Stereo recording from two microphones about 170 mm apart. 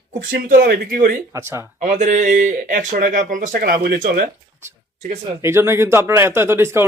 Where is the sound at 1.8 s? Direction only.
45° right (ahead or behind).